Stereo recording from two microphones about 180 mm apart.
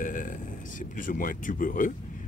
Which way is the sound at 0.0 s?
45° left (ahead or behind).